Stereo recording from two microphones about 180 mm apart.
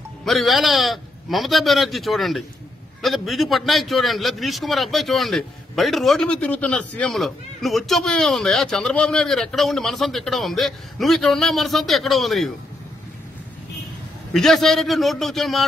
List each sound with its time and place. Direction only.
0.2 s a man's voice: centre (ahead or behind)
14.3 s a man's voice: centre (ahead or behind)